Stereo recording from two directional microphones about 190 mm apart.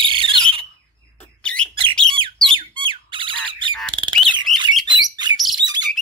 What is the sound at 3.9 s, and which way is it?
Bird, 25° right (ahead or behind).